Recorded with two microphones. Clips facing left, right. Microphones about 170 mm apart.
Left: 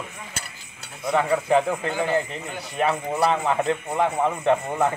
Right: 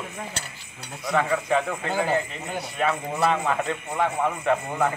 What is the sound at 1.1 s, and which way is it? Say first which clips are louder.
A man's voice: left 3 dB; 30° left (ahead or behind).